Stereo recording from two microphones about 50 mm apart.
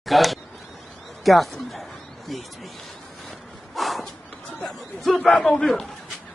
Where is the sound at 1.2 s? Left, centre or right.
Centre.